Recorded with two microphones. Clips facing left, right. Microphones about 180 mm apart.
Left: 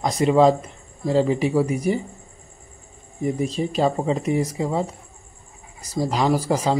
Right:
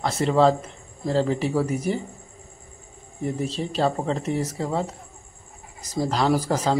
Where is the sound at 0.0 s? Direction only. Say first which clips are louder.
Left 3 dB; 15° left (ahead or behind).